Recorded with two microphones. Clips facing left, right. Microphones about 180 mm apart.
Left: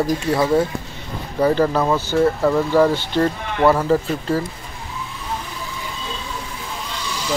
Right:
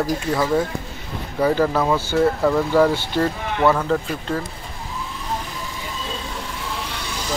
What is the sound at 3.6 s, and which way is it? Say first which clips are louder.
Speech: left 3 dB; 5° left (ahead or behind).